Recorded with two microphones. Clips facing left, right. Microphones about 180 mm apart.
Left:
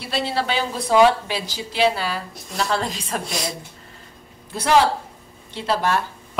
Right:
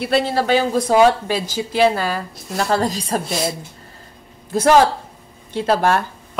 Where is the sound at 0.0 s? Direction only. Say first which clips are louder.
Right 6 dB; 50° right (ahead or behind).